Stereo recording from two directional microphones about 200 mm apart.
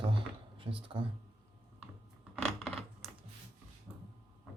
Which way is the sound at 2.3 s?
Centre (ahead or behind).